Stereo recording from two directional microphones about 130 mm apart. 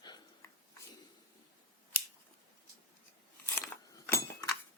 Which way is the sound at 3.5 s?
15° left (ahead or behind).